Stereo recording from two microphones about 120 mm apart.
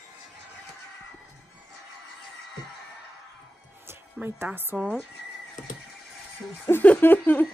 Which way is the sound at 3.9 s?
20° right (ahead or behind).